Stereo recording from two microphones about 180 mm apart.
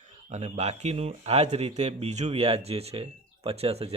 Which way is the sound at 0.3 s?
40° right (ahead or behind).